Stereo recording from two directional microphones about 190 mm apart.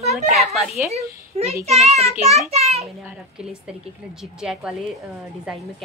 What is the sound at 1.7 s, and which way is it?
Speech, 35° right (ahead or behind).